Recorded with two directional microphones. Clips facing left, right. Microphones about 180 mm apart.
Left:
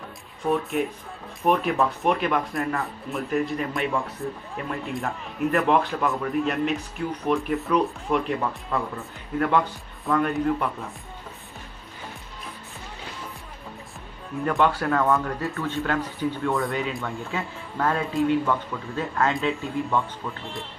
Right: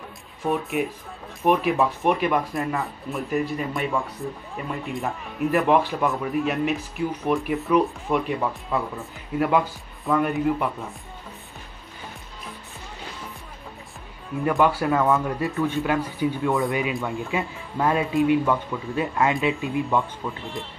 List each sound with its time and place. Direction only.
0.4 s speech: centre (ahead or behind)
14.4 s speech: 10° right (ahead or behind)